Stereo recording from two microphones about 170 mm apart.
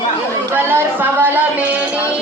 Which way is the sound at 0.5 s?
10° right (ahead or behind).